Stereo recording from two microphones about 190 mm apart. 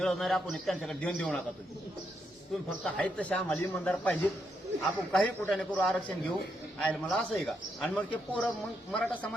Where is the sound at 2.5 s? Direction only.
Centre (ahead or behind).